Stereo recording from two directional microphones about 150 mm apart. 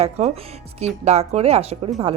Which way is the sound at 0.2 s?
45° right (ahead or behind).